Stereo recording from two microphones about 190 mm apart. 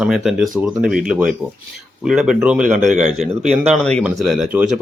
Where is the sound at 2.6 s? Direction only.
40° right (ahead or behind).